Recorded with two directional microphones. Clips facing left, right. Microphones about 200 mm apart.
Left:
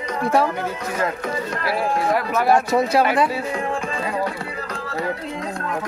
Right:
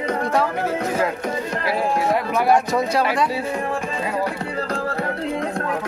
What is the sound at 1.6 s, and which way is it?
Speech, 20° right (ahead or behind).